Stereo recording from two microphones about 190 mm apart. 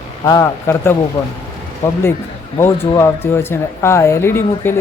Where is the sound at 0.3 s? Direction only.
15° left (ahead or behind).